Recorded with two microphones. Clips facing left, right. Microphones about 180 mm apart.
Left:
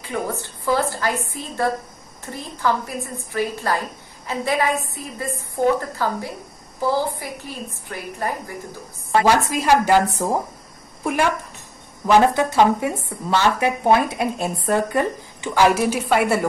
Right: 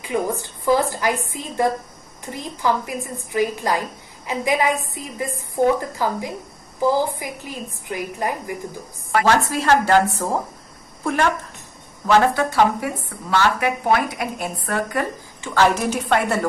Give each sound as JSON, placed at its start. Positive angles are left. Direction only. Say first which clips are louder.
{"t": 0.1, "sound": "a woman's voice", "louder": "right 3 dB", "side_deg": -15}
{"t": 9.2, "sound": "a woman's voice", "louder": "even", "side_deg": 15}
{"t": 12.1, "sound": "a woman's voice", "louder": "left 1 dB", "side_deg": 20}
{"t": 15.5, "sound": "a woman's voice", "louder": "left 1 dB", "side_deg": 10}